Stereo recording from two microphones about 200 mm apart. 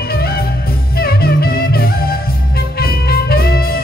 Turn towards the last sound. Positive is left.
turn(degrees=50)  # may be behind; listen again after turning